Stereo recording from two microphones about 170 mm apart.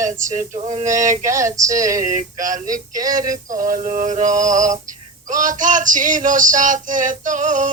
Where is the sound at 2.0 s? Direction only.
50° right (ahead or behind).